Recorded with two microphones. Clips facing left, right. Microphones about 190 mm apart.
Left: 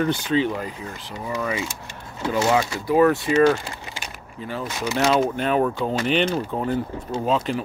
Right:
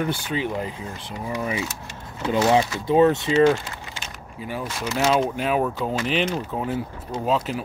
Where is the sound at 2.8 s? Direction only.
25° right (ahead or behind).